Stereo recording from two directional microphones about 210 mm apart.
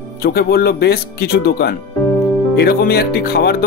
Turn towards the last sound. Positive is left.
turn(degrees=50)  # may be behind; listen again after turning